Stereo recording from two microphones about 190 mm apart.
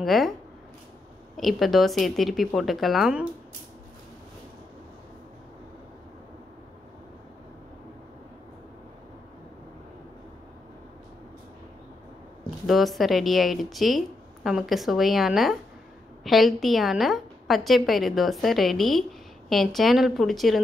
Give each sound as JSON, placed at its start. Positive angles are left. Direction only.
{"t": 0.0, "sound": "speech", "side_deg": 0}
{"t": 1.3, "sound": "speech", "side_deg": 0}
{"t": 12.6, "sound": "speech", "side_deg": 0}